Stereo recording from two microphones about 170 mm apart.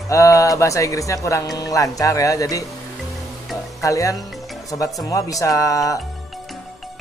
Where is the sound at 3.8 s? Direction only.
20° left (ahead or behind).